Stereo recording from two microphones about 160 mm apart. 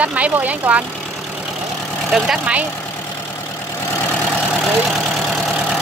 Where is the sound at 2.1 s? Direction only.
5° right (ahead or behind).